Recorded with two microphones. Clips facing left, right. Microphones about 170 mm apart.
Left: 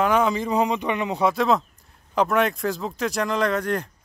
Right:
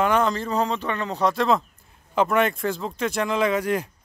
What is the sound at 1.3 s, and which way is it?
Speech, centre (ahead or behind).